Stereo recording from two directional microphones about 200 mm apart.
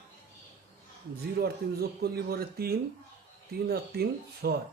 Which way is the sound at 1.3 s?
50° right (ahead or behind).